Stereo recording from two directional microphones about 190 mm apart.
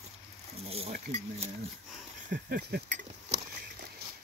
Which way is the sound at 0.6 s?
30° right (ahead or behind).